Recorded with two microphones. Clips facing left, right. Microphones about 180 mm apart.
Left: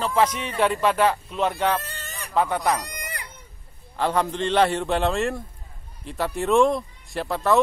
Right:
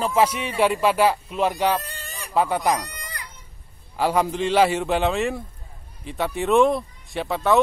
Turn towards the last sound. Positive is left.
turn(degrees=0)  # may be behind; listen again after turning